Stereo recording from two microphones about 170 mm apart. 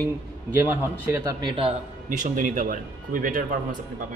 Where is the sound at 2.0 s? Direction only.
50° right (ahead or behind).